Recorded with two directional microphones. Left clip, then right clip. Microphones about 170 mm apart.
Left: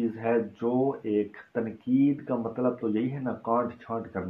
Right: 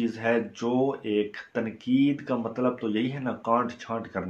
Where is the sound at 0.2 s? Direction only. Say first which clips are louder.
Right 1 dB; 15° right (ahead or behind).